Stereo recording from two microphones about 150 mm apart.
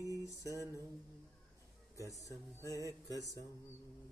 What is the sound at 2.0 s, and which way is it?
Music, 20° left (ahead or behind).